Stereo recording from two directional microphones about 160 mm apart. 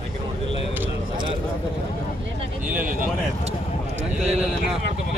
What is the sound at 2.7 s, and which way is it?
Speech, 60° right (ahead or behind).